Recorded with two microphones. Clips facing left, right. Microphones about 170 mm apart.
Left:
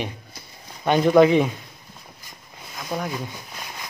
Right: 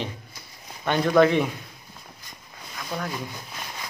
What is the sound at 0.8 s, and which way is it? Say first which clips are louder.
Speech: left 4 dB; 15° left (ahead or behind).